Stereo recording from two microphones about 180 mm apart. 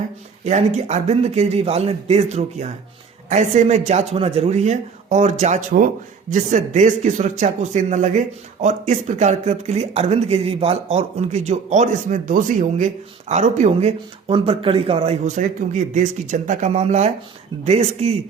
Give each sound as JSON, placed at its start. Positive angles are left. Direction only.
{"t": 0.4, "sound": "speech", "side_deg": -40}